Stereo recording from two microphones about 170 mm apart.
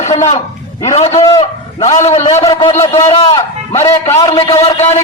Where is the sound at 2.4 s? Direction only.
20° left (ahead or behind).